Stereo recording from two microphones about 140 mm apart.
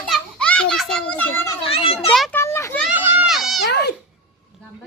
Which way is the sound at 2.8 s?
10° right (ahead or behind).